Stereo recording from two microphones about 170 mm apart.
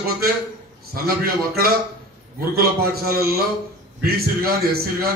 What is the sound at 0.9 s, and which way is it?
Speech, 60° right (ahead or behind).